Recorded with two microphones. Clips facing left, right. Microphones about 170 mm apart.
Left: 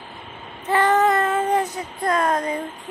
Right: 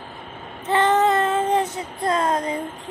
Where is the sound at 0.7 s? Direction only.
20° right (ahead or behind).